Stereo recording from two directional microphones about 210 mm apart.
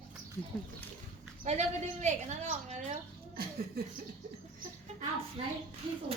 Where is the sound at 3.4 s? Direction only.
45° right (ahead or behind).